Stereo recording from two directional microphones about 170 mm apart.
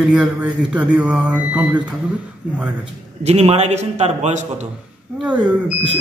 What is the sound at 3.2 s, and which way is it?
A man's voice, 40° right (ahead or behind).